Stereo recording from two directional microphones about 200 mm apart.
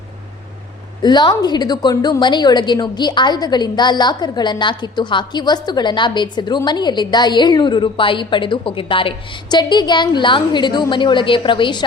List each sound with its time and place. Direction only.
1.0 s a woman's voice: 20° left (ahead or behind)